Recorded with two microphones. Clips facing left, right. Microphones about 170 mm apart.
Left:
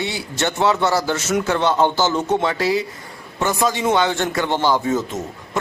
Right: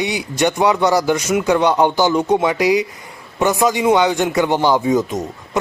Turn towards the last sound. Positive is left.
turn(degrees=-15)  # may be behind; listen again after turning